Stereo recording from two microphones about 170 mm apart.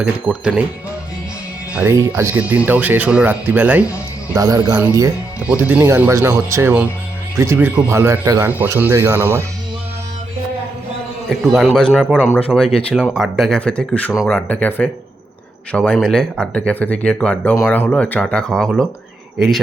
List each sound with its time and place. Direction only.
0.0 s speech: 5° right (ahead or behind)
1.7 s speech: 10° right (ahead or behind)
3.8 s music: 20° left (ahead or behind)
4.4 s speech: 20° right (ahead or behind)
11.3 s speech: 5° right (ahead or behind)
12.3 s speech: 5° left (ahead or behind)
14.2 s speech: centre (ahead or behind)
14.4 s speech: 10° left (ahead or behind)